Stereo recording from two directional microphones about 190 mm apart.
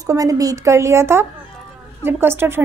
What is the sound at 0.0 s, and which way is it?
A woman's voice, 20° right (ahead or behind).